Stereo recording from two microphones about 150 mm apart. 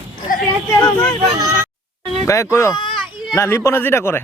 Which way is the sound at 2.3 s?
20° left (ahead or behind).